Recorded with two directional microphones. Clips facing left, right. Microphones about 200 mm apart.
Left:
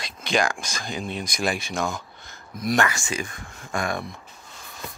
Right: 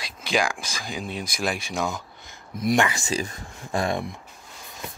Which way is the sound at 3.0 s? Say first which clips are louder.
Right 3 dB; 40° right (ahead or behind).